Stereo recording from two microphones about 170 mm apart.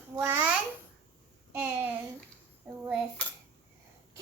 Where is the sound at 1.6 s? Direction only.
10° right (ahead or behind).